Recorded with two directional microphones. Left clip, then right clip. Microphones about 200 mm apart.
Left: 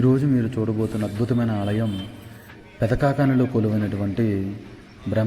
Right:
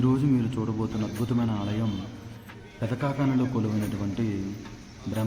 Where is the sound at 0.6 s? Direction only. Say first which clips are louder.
Left 6 dB; 15° left (ahead or behind).